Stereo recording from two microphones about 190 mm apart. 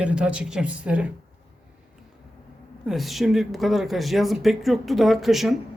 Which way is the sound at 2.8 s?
Centre (ahead or behind).